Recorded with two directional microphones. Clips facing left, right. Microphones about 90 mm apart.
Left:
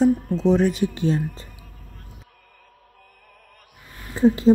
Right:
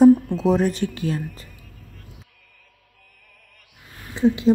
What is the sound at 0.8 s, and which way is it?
Speech, 25° left (ahead or behind).